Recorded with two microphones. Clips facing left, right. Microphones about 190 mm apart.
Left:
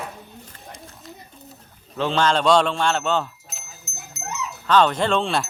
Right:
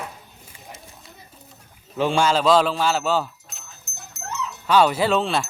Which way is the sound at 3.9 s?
50° right (ahead or behind).